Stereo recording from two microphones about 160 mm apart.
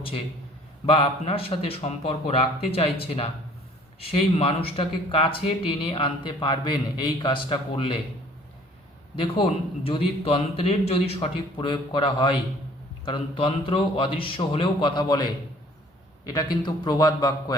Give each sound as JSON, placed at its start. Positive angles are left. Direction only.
{"t": 0.9, "sound": "speech", "side_deg": 35}
{"t": 9.1, "sound": "a man's voice", "side_deg": 35}